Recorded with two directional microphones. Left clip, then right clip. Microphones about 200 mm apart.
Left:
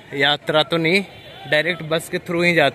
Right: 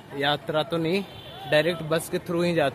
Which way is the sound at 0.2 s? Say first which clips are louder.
Left 8 dB; 25° left (ahead or behind).